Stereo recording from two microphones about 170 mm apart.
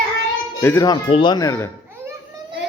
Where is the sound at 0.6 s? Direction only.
15° left (ahead or behind).